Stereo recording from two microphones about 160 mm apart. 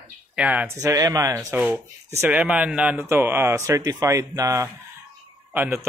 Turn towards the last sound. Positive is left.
turn(degrees=-10)  # may be behind; listen again after turning